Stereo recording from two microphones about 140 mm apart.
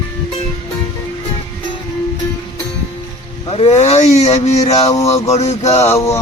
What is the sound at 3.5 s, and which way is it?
Speech, 50° left (ahead or behind).